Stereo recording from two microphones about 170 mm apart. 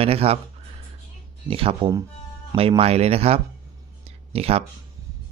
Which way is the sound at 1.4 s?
30° right (ahead or behind).